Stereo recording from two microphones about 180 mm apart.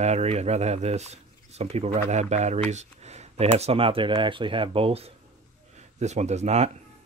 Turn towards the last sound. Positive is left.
turn(degrees=-35)  # may be behind; listen again after turning